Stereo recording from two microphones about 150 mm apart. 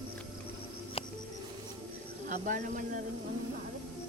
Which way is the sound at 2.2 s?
65° right (ahead or behind).